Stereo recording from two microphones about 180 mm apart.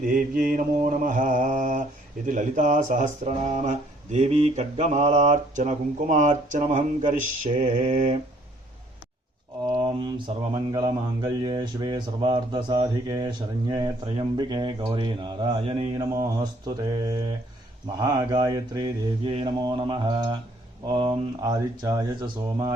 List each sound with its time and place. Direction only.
0.0 s mantra: 50° right (ahead or behind)
2.2 s speech: 45° right (ahead or behind)
7.5 s mantra: 50° right (ahead or behind)
7.9 s speech: 35° right (ahead or behind)
9.6 s mantra: 30° right (ahead or behind)
16.1 s mantra: 20° right (ahead or behind)